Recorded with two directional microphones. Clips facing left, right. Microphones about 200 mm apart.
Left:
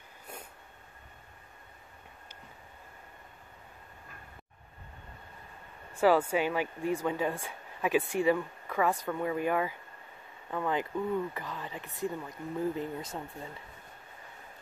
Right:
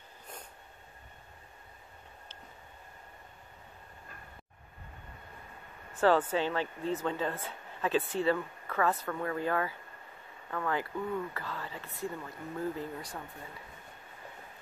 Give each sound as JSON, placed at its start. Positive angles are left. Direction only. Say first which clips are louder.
{"t": 5.9, "sound": "speech", "louder": "left 1 dB", "side_deg": 10}